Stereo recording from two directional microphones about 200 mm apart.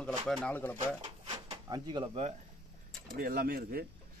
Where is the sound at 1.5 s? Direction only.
20° right (ahead or behind).